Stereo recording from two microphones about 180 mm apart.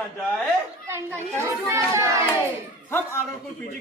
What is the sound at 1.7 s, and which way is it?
Speech, 15° right (ahead or behind).